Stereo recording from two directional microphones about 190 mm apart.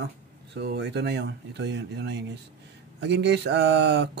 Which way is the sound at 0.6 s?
65° right (ahead or behind).